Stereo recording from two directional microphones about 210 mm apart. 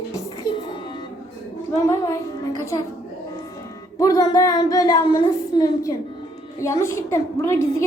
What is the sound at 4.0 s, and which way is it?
A woman's voice, 15° left (ahead or behind).